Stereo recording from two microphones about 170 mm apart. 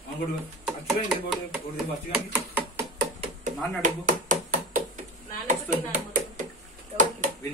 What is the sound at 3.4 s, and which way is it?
Chopping, 50° right (ahead or behind).